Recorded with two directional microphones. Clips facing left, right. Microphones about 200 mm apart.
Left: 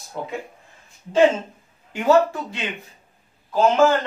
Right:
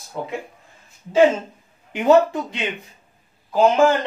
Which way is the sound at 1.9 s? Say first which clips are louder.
Right 2 dB; 20° right (ahead or behind).